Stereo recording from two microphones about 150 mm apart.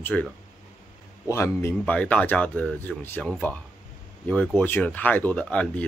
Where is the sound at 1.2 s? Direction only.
15° left (ahead or behind).